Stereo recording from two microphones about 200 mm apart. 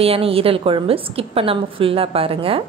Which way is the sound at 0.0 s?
30° right (ahead or behind).